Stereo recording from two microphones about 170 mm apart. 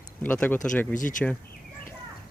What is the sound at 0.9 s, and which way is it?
Speech, 50° left (ahead or behind).